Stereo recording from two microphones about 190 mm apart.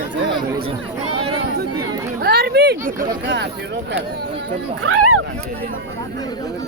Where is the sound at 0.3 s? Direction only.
25° right (ahead or behind).